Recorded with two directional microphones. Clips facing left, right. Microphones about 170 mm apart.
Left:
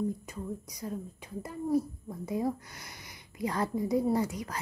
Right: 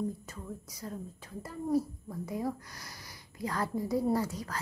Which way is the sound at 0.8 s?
15° left (ahead or behind).